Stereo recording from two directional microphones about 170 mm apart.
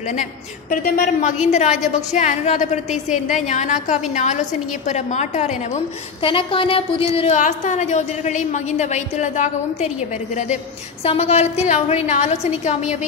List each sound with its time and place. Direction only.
0.1 s a woman's voice: 50° left (ahead or behind)
6.2 s a woman's voice: 30° left (ahead or behind)